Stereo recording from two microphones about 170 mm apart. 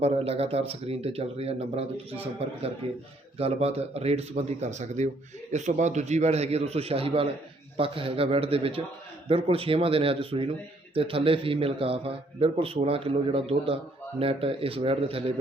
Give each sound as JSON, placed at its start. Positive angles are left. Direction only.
{"t": 0.0, "sound": "speech", "side_deg": -35}